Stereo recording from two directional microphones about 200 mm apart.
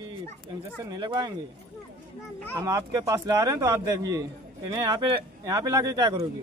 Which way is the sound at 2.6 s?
15° right (ahead or behind).